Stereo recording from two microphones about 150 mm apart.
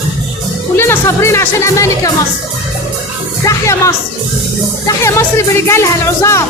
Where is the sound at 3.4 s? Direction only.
20° left (ahead or behind).